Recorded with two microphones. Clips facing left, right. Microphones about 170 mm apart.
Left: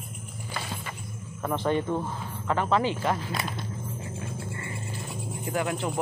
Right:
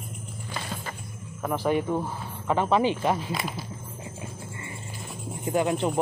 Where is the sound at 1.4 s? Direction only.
5° right (ahead or behind).